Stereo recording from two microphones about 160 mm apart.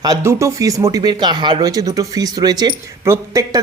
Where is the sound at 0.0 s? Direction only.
20° right (ahead or behind).